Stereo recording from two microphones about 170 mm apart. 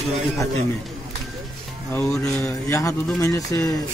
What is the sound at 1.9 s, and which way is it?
Speech, 10° left (ahead or behind).